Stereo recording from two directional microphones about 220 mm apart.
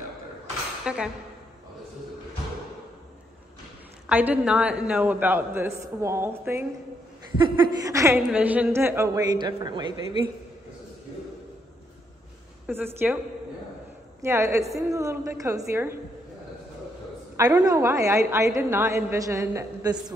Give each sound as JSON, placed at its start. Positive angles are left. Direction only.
{"t": 0.8, "sound": "speech", "side_deg": -5}
{"t": 4.1, "sound": "a woman's voice", "side_deg": -5}
{"t": 7.3, "sound": "a woman's voice", "side_deg": -20}
{"t": 12.6, "sound": "a woman's voice", "side_deg": -10}
{"t": 14.2, "sound": "a woman's voice", "side_deg": -15}
{"t": 17.4, "sound": "a woman's voice", "side_deg": -15}